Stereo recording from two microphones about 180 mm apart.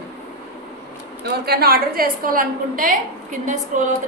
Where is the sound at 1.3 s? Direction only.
60° right (ahead or behind).